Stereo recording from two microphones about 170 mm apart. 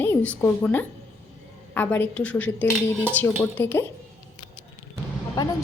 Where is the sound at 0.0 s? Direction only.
10° left (ahead or behind).